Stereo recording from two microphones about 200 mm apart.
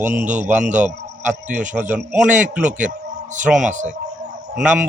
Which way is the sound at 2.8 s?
40° right (ahead or behind).